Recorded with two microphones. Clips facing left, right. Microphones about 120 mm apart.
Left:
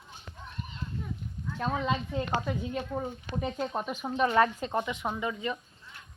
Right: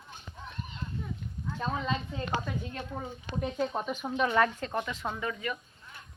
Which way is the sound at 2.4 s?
10° left (ahead or behind).